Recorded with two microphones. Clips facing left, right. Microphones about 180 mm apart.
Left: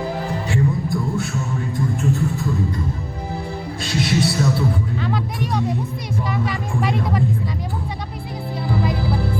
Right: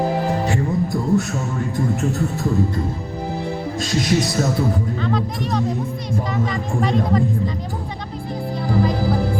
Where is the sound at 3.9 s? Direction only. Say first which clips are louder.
Even; 45° right (ahead or behind).